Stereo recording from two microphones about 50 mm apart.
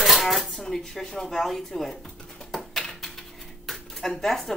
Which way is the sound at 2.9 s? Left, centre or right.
Centre.